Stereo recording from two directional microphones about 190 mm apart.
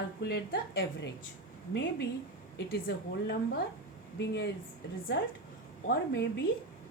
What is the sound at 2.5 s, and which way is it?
A woman's voice, 55° left (ahead or behind).